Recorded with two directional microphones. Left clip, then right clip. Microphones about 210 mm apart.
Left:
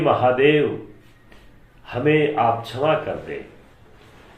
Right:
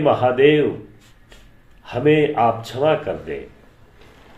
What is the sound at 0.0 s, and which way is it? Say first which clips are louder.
Speech: right 2 dB; 45° right (ahead or behind).